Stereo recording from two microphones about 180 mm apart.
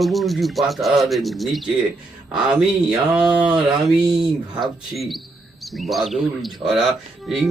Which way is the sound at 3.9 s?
Centre (ahead or behind).